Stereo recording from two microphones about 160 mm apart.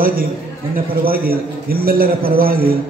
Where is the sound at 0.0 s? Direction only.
65° right (ahead or behind).